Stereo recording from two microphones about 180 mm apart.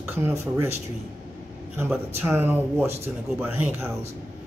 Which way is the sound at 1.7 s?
10° right (ahead or behind).